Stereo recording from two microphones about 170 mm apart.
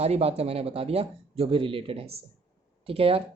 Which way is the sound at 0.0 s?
40° right (ahead or behind).